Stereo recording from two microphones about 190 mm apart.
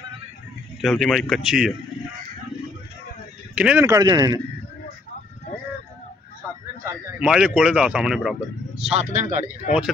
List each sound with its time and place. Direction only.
0.7 s speech: centre (ahead or behind)
3.5 s speech: 10° right (ahead or behind)
6.8 s a sound: 15° right (ahead or behind)
7.2 s speech: 5° right (ahead or behind)
8.8 s speech: 35° right (ahead or behind)
9.7 s speech: 35° left (ahead or behind)